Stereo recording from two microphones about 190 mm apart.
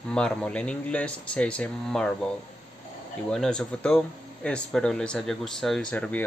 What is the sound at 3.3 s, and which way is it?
Speech, 5° left (ahead or behind).